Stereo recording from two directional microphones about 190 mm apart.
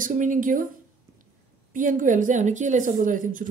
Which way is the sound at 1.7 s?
45° right (ahead or behind).